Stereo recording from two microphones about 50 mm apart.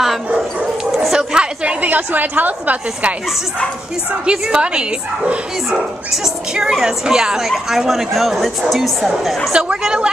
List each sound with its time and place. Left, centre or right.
1.1 s chatter: centre
1.8 s a woman's voice: right
4.3 s a woman's voice: centre
6.2 s a woman's voice: centre
9.5 s a woman's voice: centre